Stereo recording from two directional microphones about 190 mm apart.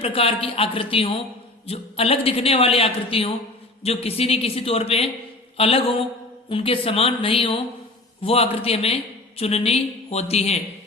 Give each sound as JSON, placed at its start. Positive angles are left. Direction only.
{"t": 0.0, "sound": "a man's voice", "side_deg": 30}